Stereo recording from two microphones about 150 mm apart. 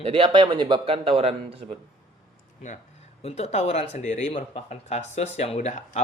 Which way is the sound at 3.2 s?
45° left (ahead or behind).